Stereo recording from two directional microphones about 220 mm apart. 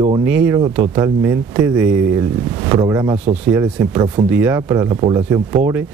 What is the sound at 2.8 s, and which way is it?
Speech, 15° right (ahead or behind).